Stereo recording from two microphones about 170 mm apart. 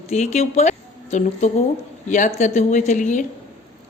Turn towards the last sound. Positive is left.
turn(degrees=45)  # may be behind; listen again after turning